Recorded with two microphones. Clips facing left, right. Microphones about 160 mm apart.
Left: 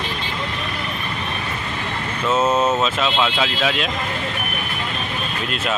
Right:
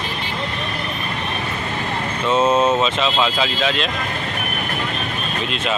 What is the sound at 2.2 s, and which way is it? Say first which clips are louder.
Speech: right 2 dB; 5° left (ahead or behind).